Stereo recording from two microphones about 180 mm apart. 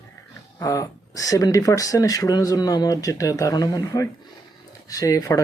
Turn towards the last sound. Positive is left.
turn(degrees=15)  # may be behind; listen again after turning